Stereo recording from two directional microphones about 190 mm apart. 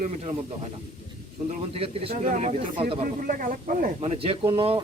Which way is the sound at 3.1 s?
45° right (ahead or behind).